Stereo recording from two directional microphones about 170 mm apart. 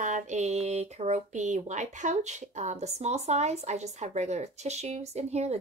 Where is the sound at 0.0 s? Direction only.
45° right (ahead or behind).